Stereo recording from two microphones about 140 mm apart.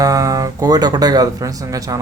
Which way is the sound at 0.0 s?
25° right (ahead or behind).